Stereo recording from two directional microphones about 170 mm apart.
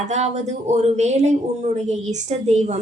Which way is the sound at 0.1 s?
40° right (ahead or behind).